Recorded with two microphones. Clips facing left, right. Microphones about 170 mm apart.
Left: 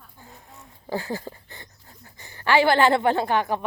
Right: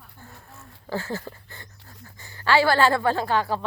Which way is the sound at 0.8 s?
15° left (ahead or behind).